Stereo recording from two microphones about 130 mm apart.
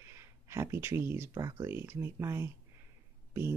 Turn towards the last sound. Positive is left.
turn(degrees=-20)  # may be behind; listen again after turning